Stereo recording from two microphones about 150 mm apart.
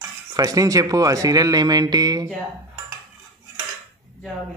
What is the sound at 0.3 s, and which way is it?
Speech, 25° right (ahead or behind).